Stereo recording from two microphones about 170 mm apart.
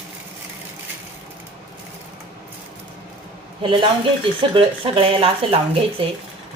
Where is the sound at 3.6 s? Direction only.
30° right (ahead or behind).